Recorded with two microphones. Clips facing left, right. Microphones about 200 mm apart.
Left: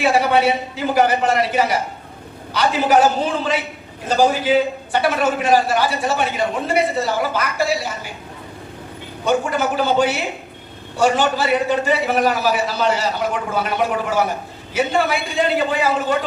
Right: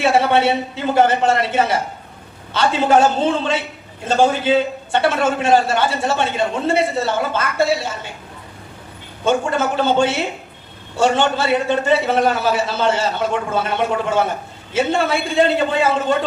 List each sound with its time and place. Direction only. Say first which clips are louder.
0.0 s a man's voice: right 1 dB; 25° right (ahead or behind)
9.2 s a man's voice: right 1 dB; 25° right (ahead or behind)